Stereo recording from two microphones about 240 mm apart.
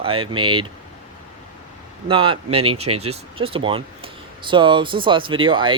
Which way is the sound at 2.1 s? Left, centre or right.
Right.